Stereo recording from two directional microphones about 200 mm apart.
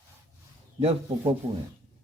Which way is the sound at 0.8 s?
30° right (ahead or behind).